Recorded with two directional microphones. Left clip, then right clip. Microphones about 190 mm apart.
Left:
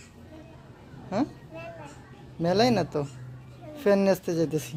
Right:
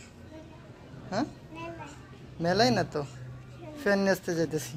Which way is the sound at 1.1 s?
40° left (ahead or behind).